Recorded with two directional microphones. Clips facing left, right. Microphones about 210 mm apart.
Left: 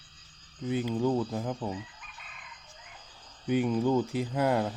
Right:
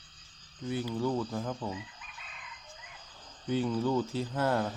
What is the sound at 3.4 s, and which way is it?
Speech, 15° left (ahead or behind).